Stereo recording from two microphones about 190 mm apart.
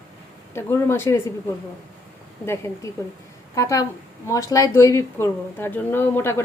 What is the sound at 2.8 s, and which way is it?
A woman's voice, 15° left (ahead or behind).